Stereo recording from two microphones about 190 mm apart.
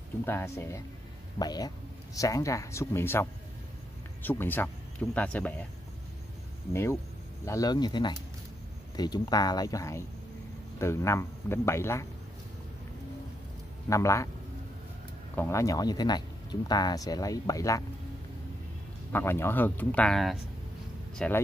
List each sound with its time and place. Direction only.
0.2 s speech: 10° left (ahead or behind)
6.7 s speech: 15° left (ahead or behind)
13.8 s speech: 15° left (ahead or behind)
15.3 s speech: 15° left (ahead or behind)
19.1 s speech: 10° left (ahead or behind)